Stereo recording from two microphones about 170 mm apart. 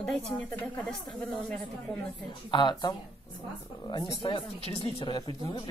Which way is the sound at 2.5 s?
25° left (ahead or behind).